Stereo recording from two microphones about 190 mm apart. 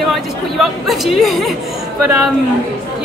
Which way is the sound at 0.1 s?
Centre (ahead or behind).